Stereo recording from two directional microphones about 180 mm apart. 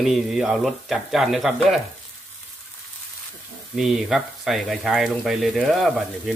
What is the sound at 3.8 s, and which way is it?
Speech, centre (ahead or behind).